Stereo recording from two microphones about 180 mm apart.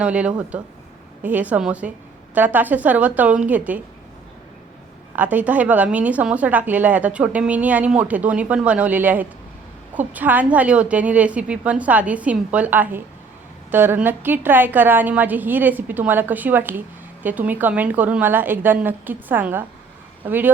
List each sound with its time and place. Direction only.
0.0 s a woman's voice: 5° right (ahead or behind)
5.1 s a woman's voice: 10° right (ahead or behind)